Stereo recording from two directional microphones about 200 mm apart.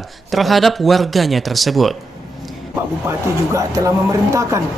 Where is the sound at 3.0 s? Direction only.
15° right (ahead or behind).